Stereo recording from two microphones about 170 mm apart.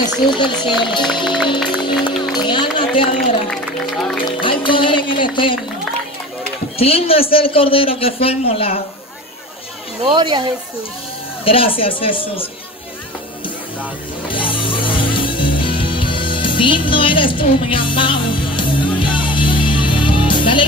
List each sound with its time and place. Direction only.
0.0 s speech: 25° left (ahead or behind)
1.8 s music: 30° left (ahead or behind)
2.4 s run: 30° left (ahead or behind)
3.4 s speech: centre (ahead or behind)
4.4 s speech: 30° left (ahead or behind)
6.8 s a man's voice: 35° left (ahead or behind)
10.0 s speech: 25° right (ahead or behind)
11.4 s a man's voice: 30° left (ahead or behind)
14.2 s music: 30° left (ahead or behind)